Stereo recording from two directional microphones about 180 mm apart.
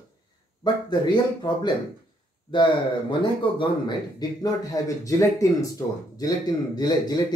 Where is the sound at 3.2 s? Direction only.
25° left (ahead or behind).